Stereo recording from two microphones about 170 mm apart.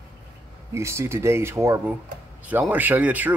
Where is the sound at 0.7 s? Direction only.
15° right (ahead or behind).